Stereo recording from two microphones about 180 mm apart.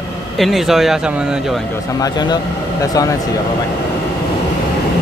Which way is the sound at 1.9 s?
20° left (ahead or behind).